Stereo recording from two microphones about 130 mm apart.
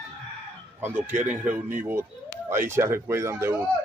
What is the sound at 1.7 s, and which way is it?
A man's voice, 15° right (ahead or behind).